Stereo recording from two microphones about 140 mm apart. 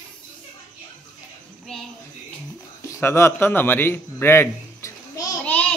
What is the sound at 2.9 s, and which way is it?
A man's voice, 20° left (ahead or behind).